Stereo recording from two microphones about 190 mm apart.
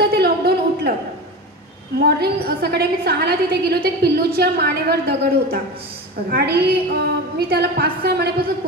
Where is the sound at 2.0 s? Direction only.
55° right (ahead or behind).